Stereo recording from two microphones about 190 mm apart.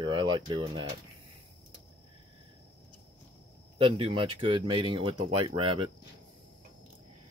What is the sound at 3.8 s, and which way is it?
Speech, 25° right (ahead or behind).